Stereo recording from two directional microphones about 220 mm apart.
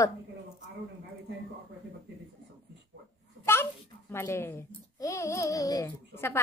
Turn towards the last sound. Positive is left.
turn(degrees=10)  # may be behind; listen again after turning